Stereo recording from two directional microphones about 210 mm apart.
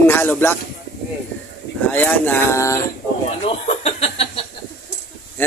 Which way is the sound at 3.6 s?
30° left (ahead or behind).